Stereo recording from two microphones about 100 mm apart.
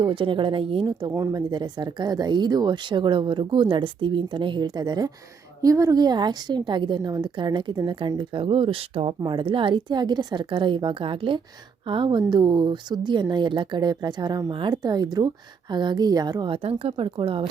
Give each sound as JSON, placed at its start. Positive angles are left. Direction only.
{"t": 0.0, "sound": "speech", "side_deg": -55}
{"t": 1.3, "sound": "speech", "side_deg": -40}
{"t": 9.2, "sound": "speech", "side_deg": -55}
{"t": 16.6, "sound": "speech", "side_deg": -70}